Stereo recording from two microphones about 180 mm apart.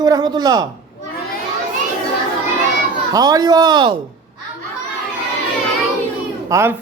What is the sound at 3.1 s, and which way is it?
Speech, 20° right (ahead or behind).